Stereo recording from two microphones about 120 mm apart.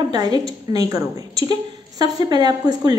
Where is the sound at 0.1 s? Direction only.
35° right (ahead or behind).